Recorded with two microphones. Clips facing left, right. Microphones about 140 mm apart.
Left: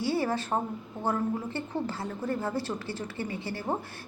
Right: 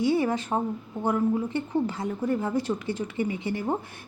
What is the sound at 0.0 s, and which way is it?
A woman's voice, 20° right (ahead or behind).